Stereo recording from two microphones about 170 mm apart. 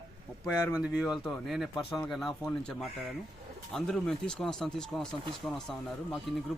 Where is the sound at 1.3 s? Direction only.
Centre (ahead or behind).